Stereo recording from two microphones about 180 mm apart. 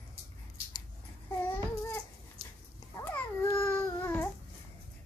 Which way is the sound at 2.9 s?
10° left (ahead or behind).